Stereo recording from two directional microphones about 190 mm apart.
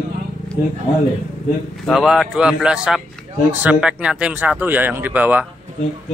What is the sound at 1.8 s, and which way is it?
Speech, centre (ahead or behind).